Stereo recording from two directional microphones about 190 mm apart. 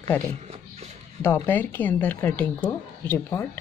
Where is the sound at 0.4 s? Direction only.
35° right (ahead or behind).